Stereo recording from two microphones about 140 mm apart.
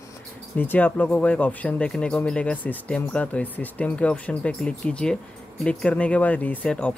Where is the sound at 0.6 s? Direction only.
10° left (ahead or behind).